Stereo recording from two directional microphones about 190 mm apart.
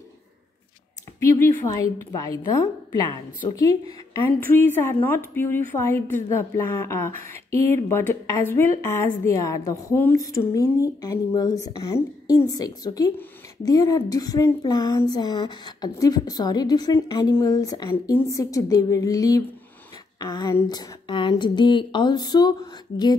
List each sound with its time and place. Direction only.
1.4 s a woman's voice: 15° left (ahead or behind)